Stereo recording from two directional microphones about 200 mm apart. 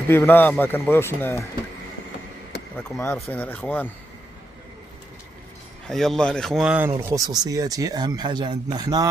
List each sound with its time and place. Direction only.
0.1 s a man's voice: 10° left (ahead or behind)
2.8 s a man's voice: 10° left (ahead or behind)
5.9 s speech: centre (ahead or behind); by 9.1 s 20° right (ahead or behind)